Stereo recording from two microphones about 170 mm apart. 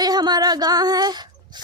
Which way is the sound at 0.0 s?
25° right (ahead or behind).